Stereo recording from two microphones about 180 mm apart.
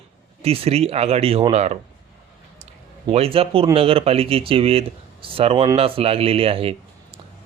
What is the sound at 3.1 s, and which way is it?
Speech, 35° right (ahead or behind).